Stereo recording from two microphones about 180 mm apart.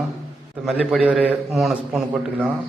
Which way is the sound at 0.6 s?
5° right (ahead or behind).